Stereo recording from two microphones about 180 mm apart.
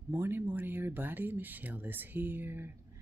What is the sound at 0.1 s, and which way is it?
Speech, 10° right (ahead or behind).